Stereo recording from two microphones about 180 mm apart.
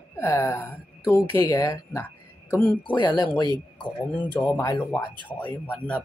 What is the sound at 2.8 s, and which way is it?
Speech, 25° left (ahead or behind).